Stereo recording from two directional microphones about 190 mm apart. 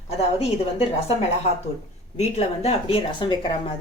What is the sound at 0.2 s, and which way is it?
Speech, 30° left (ahead or behind).